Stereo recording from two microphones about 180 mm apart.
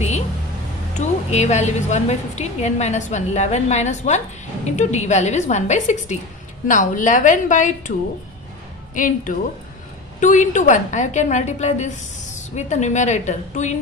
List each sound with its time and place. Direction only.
0.9 s a woman's voice: 40° left (ahead or behind)
8.9 s a woman's voice: 45° left (ahead or behind)